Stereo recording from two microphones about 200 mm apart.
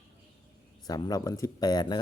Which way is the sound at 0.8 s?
20° left (ahead or behind).